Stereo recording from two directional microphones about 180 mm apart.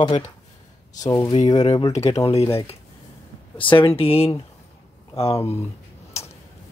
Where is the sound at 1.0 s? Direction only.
20° left (ahead or behind).